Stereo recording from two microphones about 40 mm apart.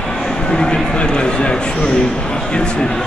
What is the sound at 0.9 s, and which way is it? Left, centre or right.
Speech, left.